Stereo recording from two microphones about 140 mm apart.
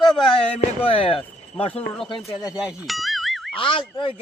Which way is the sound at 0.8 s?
40° left (ahead or behind).